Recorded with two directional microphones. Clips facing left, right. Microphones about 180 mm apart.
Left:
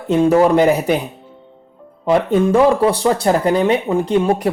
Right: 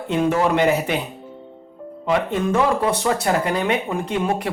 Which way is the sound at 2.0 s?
35° left (ahead or behind).